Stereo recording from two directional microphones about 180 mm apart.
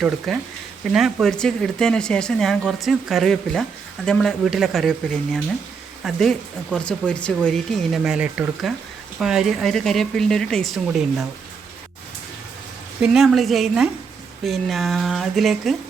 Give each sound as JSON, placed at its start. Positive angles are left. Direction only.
{"t": 0.3, "sound": "speech", "side_deg": 0}
{"t": 13.0, "sound": "speech", "side_deg": 0}